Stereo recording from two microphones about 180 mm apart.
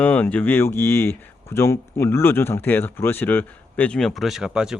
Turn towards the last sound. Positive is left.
turn(degrees=-5)  # may be behind; listen again after turning